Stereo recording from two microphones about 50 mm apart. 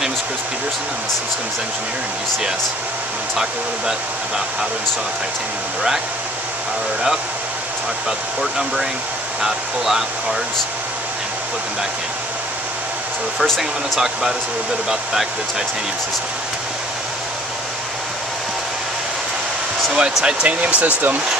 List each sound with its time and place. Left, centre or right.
8.4 s speech: centre
13.4 s speech: centre
20.0 s speech: centre
20.4 s speech: right